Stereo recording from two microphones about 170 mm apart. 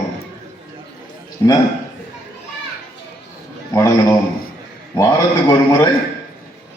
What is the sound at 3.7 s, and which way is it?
A man's voice, 15° left (ahead or behind).